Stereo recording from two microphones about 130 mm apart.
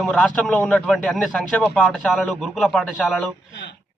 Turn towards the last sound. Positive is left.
turn(degrees=0)  # may be behind; listen again after turning